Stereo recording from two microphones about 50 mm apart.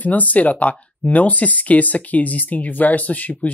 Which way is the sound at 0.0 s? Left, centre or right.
Left.